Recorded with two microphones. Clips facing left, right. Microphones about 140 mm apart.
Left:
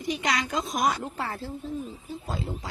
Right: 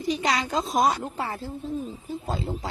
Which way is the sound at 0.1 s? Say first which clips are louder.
Right 3 dB; 30° right (ahead or behind).